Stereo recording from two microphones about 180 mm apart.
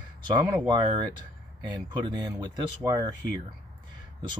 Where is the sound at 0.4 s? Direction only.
25° right (ahead or behind).